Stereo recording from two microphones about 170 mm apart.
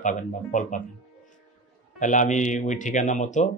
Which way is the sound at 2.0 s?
45° left (ahead or behind).